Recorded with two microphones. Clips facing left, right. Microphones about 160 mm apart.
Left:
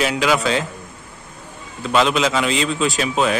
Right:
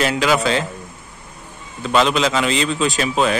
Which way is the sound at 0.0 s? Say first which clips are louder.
Right 1 dB; centre (ahead or behind).